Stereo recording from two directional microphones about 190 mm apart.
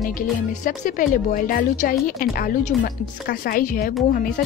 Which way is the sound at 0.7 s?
45° left (ahead or behind).